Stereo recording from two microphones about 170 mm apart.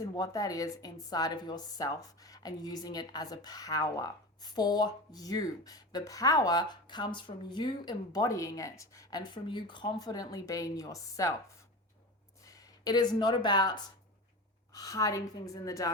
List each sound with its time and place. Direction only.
0.2 s speech: 20° left (ahead or behind)
12.5 s speech: 20° left (ahead or behind)